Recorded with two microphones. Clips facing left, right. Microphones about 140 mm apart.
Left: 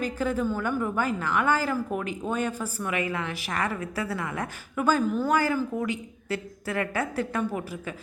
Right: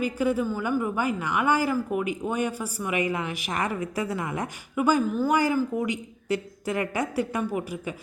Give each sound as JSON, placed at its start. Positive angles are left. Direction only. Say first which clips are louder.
{"t": 0.0, "sound": "a woman's voice", "louder": "right 2 dB", "side_deg": -10}
{"t": 5.3, "sound": "a woman's voice", "louder": "right 2 dB", "side_deg": -15}